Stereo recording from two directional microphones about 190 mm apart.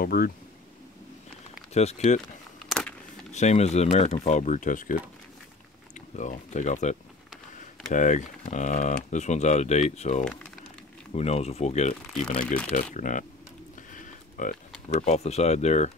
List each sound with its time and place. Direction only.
0.0 s speech: 50° left (ahead or behind)
1.7 s speech: 35° left (ahead or behind)
3.3 s speech: 35° left (ahead or behind)
5.9 s speech: 40° left (ahead or behind)
13.9 s a sound: 40° left (ahead or behind)
14.9 s speech: 35° left (ahead or behind)